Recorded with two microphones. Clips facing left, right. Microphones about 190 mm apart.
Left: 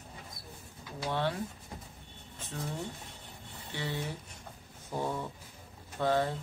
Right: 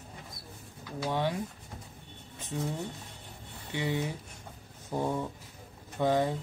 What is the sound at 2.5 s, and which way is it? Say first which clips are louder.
Speech: right 6 dB; 15° right (ahead or behind).